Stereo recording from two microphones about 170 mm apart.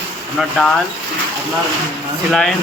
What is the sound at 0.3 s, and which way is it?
Speech, 5° left (ahead or behind).